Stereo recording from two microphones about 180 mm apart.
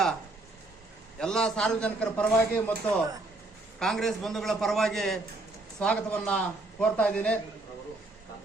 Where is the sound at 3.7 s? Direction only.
Centre (ahead or behind).